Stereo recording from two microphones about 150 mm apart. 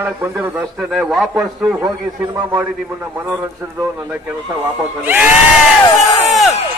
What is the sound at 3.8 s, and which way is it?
A man's voice, 10° right (ahead or behind).